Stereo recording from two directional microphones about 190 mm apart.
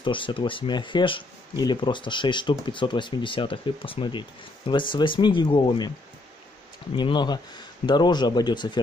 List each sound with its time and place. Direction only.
0.0 s speech: 25° left (ahead or behind)
7.0 s speech: 25° left (ahead or behind)